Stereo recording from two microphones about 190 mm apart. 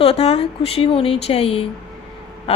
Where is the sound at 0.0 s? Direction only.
30° left (ahead or behind).